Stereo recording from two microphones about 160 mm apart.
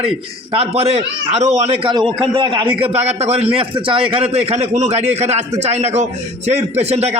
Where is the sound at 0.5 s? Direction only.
40° right (ahead or behind).